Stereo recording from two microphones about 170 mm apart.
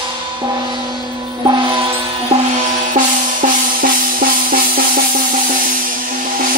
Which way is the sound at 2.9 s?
55° right (ahead or behind).